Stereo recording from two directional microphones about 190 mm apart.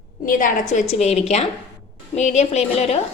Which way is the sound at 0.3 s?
45° left (ahead or behind).